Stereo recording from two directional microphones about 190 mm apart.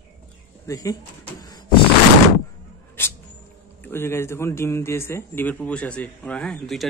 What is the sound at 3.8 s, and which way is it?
A man's voice, 10° left (ahead or behind).